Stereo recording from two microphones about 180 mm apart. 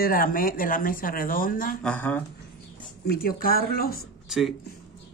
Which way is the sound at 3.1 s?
55° left (ahead or behind).